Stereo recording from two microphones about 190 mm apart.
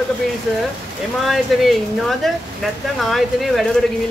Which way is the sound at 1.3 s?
Centre (ahead or behind).